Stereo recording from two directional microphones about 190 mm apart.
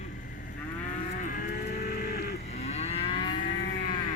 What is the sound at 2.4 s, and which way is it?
Moo, 35° left (ahead or behind).